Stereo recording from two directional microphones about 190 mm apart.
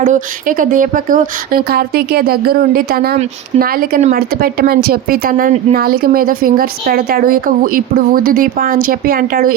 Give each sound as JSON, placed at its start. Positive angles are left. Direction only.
{"t": 0.0, "sound": "a woman's voice", "side_deg": -45}